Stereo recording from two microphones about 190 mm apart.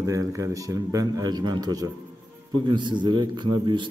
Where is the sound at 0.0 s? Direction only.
15° right (ahead or behind).